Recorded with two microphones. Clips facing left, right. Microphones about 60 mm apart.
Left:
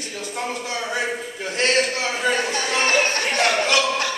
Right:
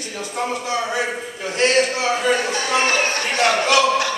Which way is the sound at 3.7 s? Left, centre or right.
Centre.